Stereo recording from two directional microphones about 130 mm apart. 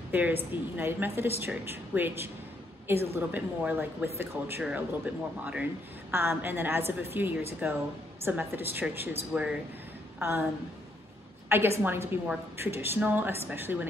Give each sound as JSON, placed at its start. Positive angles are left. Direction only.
{"t": 0.1, "sound": "speech", "side_deg": -15}
{"t": 10.1, "sound": "a woman's voice", "side_deg": -20}
{"t": 11.4, "sound": "speech", "side_deg": -20}